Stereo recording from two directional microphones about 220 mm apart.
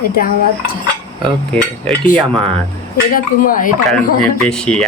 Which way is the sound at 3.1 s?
40° left (ahead or behind).